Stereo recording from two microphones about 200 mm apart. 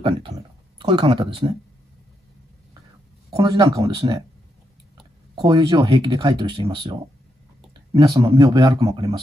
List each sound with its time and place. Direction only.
0.7 s speech: 25° right (ahead or behind)
3.3 s speech: 20° right (ahead or behind)
5.3 s speech: 20° right (ahead or behind)